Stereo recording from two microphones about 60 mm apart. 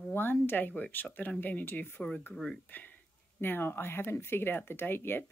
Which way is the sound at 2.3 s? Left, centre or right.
Centre.